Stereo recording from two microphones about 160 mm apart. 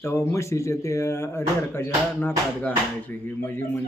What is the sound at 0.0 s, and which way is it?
Speech, 15° left (ahead or behind).